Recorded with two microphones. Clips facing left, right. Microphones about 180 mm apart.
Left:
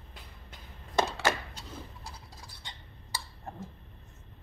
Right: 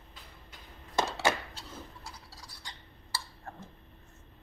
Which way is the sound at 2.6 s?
20° left (ahead or behind).